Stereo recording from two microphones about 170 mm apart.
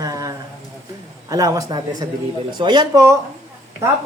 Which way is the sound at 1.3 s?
20° right (ahead or behind).